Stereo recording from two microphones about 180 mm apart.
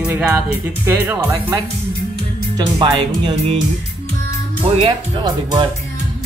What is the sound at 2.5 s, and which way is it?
Speech, 25° right (ahead or behind).